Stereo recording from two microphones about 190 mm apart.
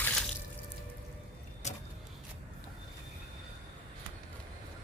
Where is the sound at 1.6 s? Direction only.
35° left (ahead or behind).